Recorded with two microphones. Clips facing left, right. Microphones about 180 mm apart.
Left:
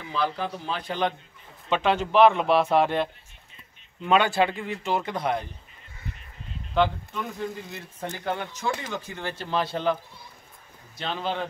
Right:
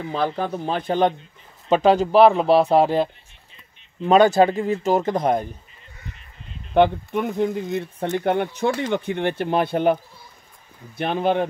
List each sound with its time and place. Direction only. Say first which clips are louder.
0.0 s speech: right 5 dB; 45° right (ahead or behind)
6.7 s speech: right 7 dB; 55° right (ahead or behind)
11.0 s speech: right 9 dB; 55° right (ahead or behind)